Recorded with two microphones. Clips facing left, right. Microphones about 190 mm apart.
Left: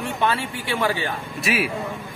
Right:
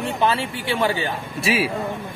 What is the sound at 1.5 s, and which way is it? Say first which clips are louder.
Speech: right 2 dB; 30° right (ahead or behind).